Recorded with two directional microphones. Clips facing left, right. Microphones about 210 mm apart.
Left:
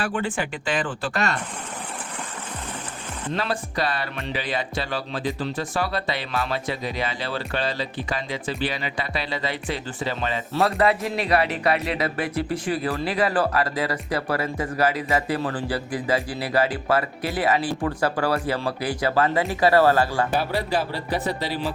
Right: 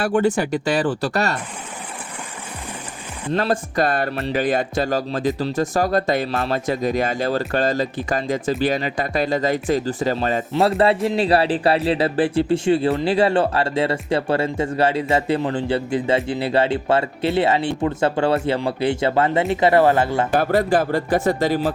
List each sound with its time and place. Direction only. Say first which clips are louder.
0.0 s speech: right 8 dB; 40° right (ahead or behind)
3.3 s speech: right 7 dB; 45° right (ahead or behind)
10.6 s speech: right 4 dB; 30° right (ahead or behind)
20.3 s speech: right 6 dB; 50° right (ahead or behind)